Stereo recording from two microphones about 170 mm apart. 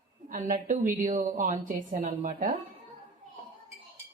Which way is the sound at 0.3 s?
50° right (ahead or behind).